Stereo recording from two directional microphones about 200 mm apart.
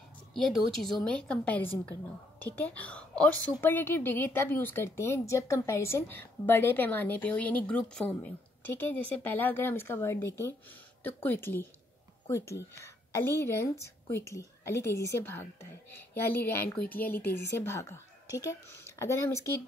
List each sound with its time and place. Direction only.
0.3 s a woman's voice: centre (ahead or behind)